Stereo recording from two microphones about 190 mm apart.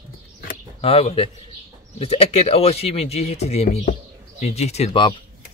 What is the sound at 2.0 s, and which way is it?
Speech, 30° left (ahead or behind).